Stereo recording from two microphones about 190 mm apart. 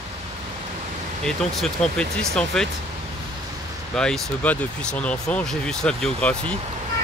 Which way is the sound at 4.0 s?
5° left (ahead or behind).